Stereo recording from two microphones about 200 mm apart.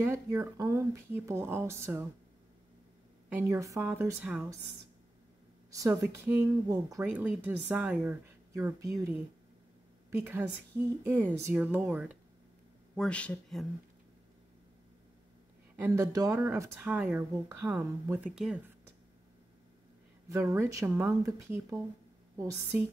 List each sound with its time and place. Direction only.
0.0 s speech: 15° right (ahead or behind)
3.3 s speech: 10° right (ahead or behind)
5.7 s speech: 15° right (ahead or behind)
11.1 s speech: 10° right (ahead or behind)
12.9 s speech: 5° left (ahead or behind)
15.7 s speech: 15° right (ahead or behind)
20.2 s speech: 15° right (ahead or behind)